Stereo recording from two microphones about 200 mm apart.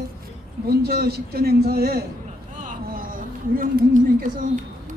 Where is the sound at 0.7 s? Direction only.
55° right (ahead or behind).